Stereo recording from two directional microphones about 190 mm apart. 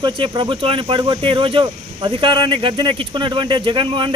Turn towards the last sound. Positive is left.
turn(degrees=-25)  # may be behind; listen again after turning